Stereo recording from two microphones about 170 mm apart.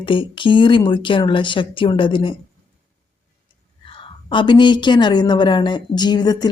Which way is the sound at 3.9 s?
30° left (ahead or behind).